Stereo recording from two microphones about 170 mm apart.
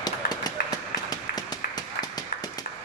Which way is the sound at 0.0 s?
25° left (ahead or behind).